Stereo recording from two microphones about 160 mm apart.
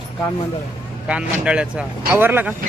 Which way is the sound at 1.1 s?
5° right (ahead or behind).